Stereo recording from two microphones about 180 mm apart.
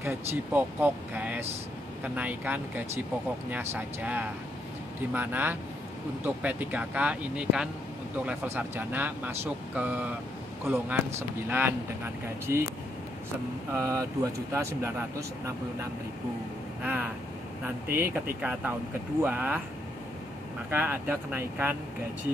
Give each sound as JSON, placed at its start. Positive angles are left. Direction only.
{"t": 0.0, "sound": "speech", "side_deg": -15}
{"t": 11.1, "sound": "speech", "side_deg": -10}
{"t": 13.7, "sound": "speech", "side_deg": -15}
{"t": 20.7, "sound": "speech", "side_deg": -10}